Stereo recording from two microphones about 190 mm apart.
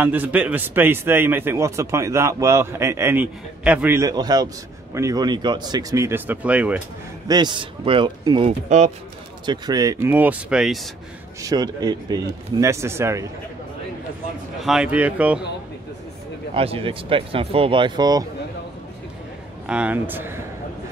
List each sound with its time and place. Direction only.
0.0 s a man's voice: 10° right (ahead or behind)
7.2 s speech: 25° right (ahead or behind)
8.5 s speech: 35° right (ahead or behind)
9.5 s a man's voice: 20° right (ahead or behind); by 10.9 s centre (ahead or behind)
11.4 s a man's voice: 20° right (ahead or behind)
14.6 s a man's voice: 5° right (ahead or behind)
16.5 s speech: 30° right (ahead or behind)
19.6 s a man's voice: 5° right (ahead or behind)